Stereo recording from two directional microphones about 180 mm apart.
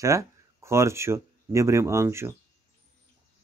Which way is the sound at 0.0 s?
15° right (ahead or behind).